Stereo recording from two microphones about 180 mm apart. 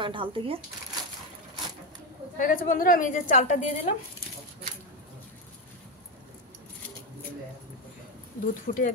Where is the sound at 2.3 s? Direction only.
50° left (ahead or behind).